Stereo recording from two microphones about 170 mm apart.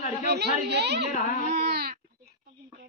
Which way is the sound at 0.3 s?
75° right (ahead or behind).